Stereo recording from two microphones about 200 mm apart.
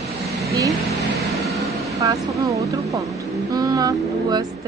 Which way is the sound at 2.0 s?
15° right (ahead or behind).